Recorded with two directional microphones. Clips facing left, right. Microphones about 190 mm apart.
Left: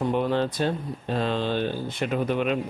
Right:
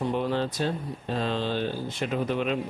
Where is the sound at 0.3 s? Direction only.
55° left (ahead or behind).